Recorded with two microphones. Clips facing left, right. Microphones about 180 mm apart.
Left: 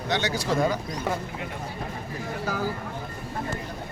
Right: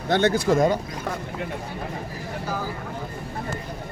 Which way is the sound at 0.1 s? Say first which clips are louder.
Right 7 dB; 55° right (ahead or behind).